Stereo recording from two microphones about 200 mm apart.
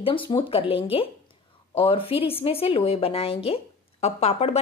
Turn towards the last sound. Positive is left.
turn(degrees=30)  # may be behind; listen again after turning